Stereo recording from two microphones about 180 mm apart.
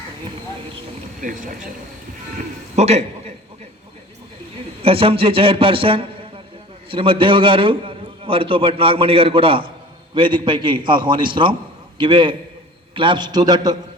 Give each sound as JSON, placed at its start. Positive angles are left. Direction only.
{"t": 1.2, "sound": "speech", "side_deg": -45}
{"t": 2.7, "sound": "a man's voice", "side_deg": -35}
{"t": 4.8, "sound": "a man's voice", "side_deg": -30}